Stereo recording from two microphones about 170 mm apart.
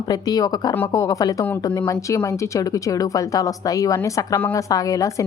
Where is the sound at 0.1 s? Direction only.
20° left (ahead or behind).